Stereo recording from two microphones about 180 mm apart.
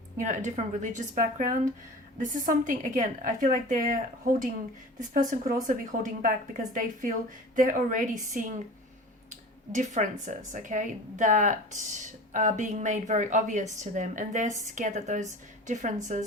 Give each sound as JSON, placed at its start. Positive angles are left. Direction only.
{"t": 0.2, "sound": "speech", "side_deg": -45}